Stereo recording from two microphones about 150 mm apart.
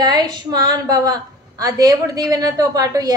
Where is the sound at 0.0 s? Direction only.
30° right (ahead or behind).